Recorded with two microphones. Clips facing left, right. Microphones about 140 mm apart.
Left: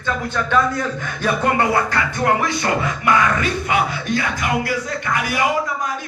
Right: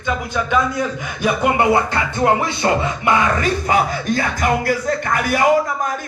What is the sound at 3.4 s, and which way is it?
Speech, 40° right (ahead or behind).